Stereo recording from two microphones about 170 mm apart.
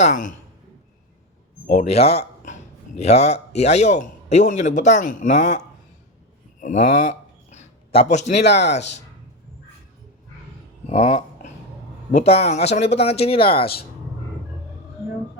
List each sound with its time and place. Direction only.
0.0 s a man's voice: 45° left (ahead or behind)
1.6 s a man's voice: 40° left (ahead or behind)
6.6 s a sound: 50° left (ahead or behind)
8.4 s speech: 80° left
10.8 s a sound: 40° left (ahead or behind)
12.1 s speech: 40° left (ahead or behind)